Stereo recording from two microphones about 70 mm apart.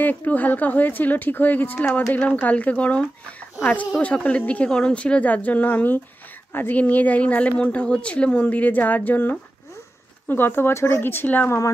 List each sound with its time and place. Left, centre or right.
0.0 s a woman's voice: left